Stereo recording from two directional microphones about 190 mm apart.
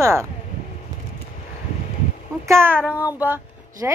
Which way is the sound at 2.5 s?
15° right (ahead or behind).